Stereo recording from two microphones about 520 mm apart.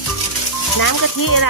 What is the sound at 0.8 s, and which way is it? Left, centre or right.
Speech, left.